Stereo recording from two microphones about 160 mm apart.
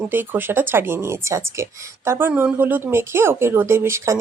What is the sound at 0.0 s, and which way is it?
Speech, 10° right (ahead or behind).